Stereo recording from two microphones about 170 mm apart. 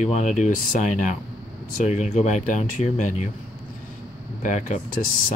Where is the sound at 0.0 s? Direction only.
45° left (ahead or behind).